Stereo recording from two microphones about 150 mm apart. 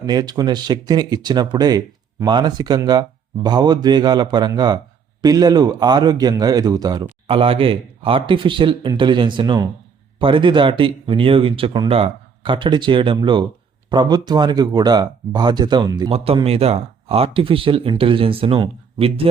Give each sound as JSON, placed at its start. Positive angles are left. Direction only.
{"t": 0.0, "sound": "speech", "side_deg": -25}
{"t": 7.3, "sound": "speech", "side_deg": -35}